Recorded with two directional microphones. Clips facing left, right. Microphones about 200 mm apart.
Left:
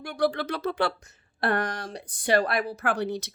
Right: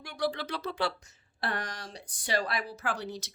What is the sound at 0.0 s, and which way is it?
Speech, 50° left (ahead or behind).